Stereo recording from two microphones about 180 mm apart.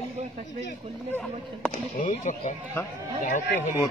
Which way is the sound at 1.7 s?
45° left (ahead or behind).